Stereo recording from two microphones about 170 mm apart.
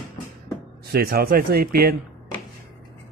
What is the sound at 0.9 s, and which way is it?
Speech, 65° right (ahead or behind).